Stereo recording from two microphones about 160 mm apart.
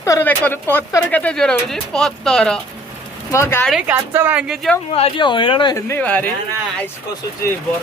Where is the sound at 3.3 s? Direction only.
15° left (ahead or behind).